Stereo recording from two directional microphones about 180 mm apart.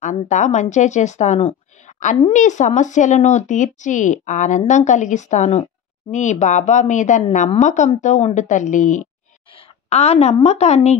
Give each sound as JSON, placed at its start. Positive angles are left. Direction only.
{"t": 0.0, "sound": "a woman's voice", "side_deg": 45}